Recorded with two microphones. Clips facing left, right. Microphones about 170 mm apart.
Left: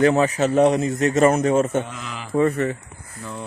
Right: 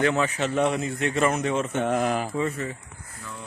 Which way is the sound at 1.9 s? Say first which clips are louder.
Right 11 dB; 50° right (ahead or behind).